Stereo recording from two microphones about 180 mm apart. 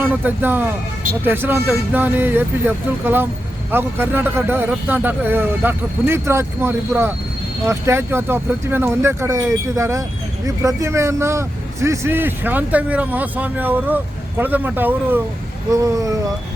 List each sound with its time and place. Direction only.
0.0 s speech: 10° right (ahead or behind)